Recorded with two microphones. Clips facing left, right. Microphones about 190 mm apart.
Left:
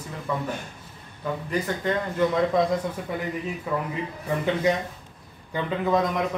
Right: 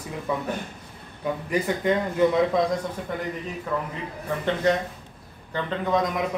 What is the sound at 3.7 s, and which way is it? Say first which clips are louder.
Speech: even; 10° left (ahead or behind).